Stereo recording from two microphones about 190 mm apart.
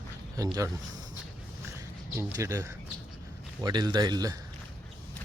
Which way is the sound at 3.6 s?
20° right (ahead or behind).